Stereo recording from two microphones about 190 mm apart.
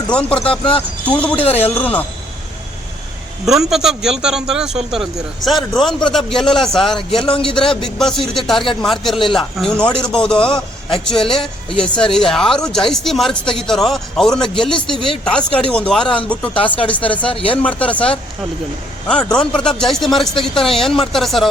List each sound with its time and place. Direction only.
0.3 s speech: 30° left (ahead or behind)
0.8 s speech: 5° left (ahead or behind)
1.5 s a man's voice: 30° left (ahead or behind)
1.7 s speech: 10° left (ahead or behind)
3.4 s a man's voice: centre (ahead or behind)
7.2 s speech: 25° left (ahead or behind)
7.4 s a man's voice: 5° left (ahead or behind)
11.3 s speech: 25° left (ahead or behind)
11.9 s a man's voice: 5° left (ahead or behind)
16.6 s speech: 30° left (ahead or behind)
17.1 s a man's voice: 5° left (ahead or behind)